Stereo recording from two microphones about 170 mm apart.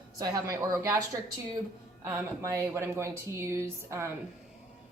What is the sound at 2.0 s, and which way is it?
A woman's voice, 15° right (ahead or behind).